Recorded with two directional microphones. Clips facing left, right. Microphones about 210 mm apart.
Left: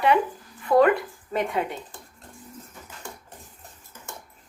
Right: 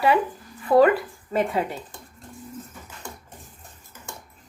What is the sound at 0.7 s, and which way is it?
Speech, 25° right (ahead or behind).